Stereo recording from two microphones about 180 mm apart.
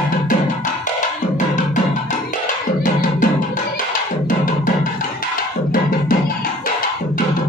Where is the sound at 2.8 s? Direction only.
45° left (ahead or behind).